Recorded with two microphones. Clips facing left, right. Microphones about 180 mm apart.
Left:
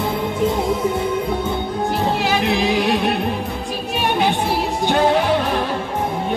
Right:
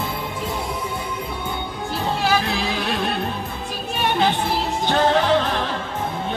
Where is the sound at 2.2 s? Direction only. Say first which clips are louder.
Left 1 dB; 20° left (ahead or behind).